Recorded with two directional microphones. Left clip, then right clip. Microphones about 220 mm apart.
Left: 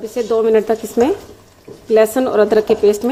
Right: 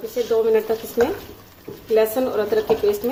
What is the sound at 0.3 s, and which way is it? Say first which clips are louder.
A woman's voice: left 5 dB; 35° left (ahead or behind).